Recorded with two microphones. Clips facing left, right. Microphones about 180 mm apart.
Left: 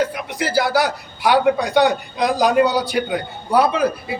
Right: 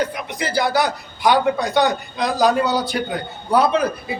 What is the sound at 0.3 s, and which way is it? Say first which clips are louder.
A man's voice: left 1 dB; 5° left (ahead or behind).